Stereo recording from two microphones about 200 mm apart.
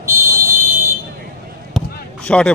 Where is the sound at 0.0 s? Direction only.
15° right (ahead or behind).